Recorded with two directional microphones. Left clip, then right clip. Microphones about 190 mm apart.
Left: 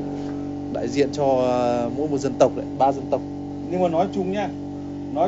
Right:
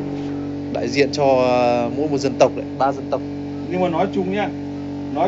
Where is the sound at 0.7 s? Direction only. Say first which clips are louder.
Right 4 dB; 20° left (ahead or behind).